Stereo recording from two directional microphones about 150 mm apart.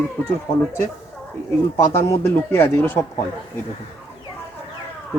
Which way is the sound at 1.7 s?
15° left (ahead or behind).